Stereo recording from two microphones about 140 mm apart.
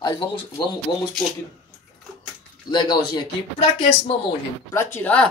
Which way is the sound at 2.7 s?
30° left (ahead or behind).